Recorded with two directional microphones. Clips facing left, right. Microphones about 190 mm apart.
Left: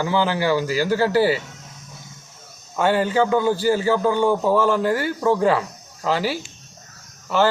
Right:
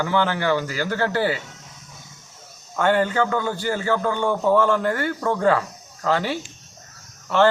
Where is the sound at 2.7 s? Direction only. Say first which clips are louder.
Left 1 dB; 5° left (ahead or behind).